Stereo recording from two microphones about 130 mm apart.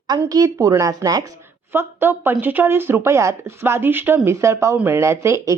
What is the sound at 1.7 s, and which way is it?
Speech, 15° right (ahead or behind).